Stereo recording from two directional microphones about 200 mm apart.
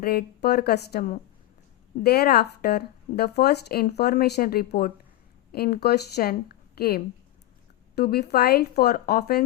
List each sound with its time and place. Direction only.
0.0 s speech: 50° left (ahead or behind)